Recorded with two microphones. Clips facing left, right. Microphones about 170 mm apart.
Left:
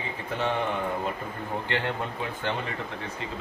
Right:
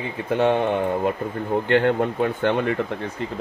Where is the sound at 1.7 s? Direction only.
55° right (ahead or behind).